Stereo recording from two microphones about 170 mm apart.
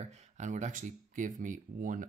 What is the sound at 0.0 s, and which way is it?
Speech, 40° right (ahead or behind).